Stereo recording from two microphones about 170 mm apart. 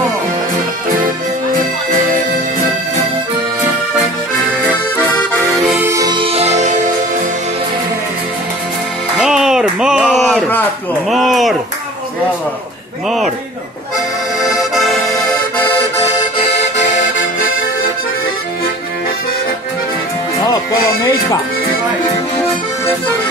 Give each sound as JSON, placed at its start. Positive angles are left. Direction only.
{"t": 5.8, "sound": "music", "side_deg": -15}
{"t": 9.2, "sound": "a sound", "side_deg": -5}
{"t": 14.4, "sound": "accordion", "side_deg": 0}